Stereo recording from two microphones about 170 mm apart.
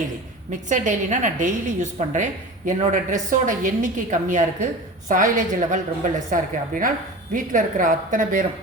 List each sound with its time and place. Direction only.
0.5 s a woman's voice: 45° right (ahead or behind)